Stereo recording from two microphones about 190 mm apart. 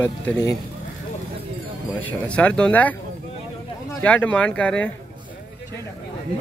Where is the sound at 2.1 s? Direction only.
5° left (ahead or behind).